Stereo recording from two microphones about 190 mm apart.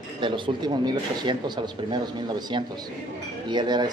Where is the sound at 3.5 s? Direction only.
25° right (ahead or behind).